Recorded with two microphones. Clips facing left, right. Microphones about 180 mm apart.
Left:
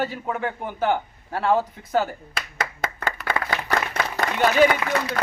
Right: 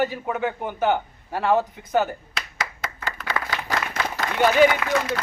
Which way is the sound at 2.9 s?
55° left (ahead or behind).